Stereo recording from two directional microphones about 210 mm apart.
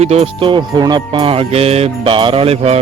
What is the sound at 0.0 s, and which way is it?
Music, 30° right (ahead or behind).